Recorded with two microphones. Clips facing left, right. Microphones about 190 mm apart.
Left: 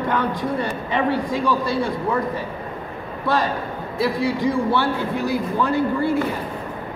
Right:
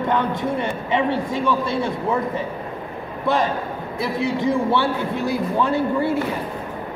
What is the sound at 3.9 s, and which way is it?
Speech, 20° right (ahead or behind).